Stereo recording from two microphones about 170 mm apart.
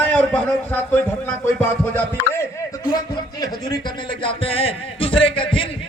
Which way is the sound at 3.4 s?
25° left (ahead or behind).